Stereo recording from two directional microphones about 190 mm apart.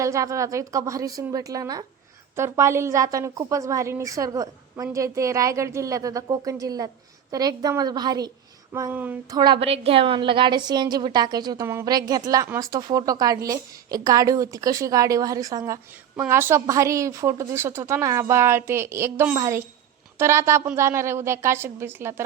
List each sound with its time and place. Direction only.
0.0 s a woman's voice: 15° right (ahead or behind)
9.3 s a woman's voice: 25° right (ahead or behind)